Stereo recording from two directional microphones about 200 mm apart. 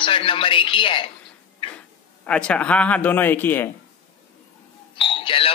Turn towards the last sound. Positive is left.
turn(degrees=25)  # may be behind; listen again after turning